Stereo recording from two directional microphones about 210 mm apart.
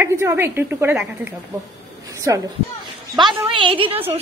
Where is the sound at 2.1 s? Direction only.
15° right (ahead or behind).